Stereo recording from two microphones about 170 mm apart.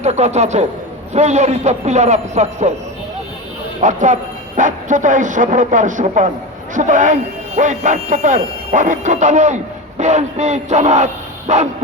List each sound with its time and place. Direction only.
0.0 s a man's voice: 40° right (ahead or behind)
3.8 s speech: 45° right (ahead or behind)